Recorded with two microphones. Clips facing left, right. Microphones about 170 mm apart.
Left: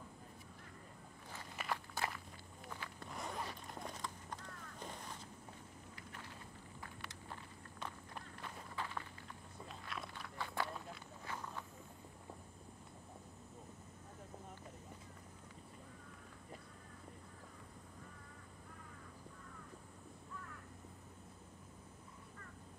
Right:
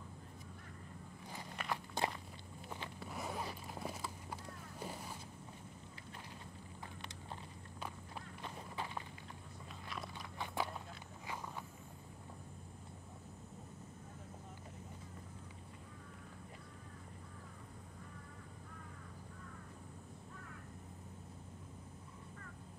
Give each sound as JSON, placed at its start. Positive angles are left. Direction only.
{"t": 1.6, "sound": "walk", "side_deg": 5}
{"t": 3.0, "sound": "zipper", "side_deg": -5}
{"t": 4.7, "sound": "a sound", "side_deg": -5}
{"t": 8.7, "sound": "walk", "side_deg": -20}
{"t": 9.8, "sound": "walk", "side_deg": 0}
{"t": 10.1, "sound": "walk", "side_deg": -15}